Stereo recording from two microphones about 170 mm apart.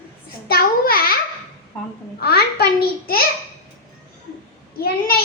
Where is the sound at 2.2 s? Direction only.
70° left (ahead or behind).